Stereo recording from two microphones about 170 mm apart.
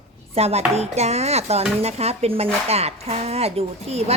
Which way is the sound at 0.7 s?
40° right (ahead or behind).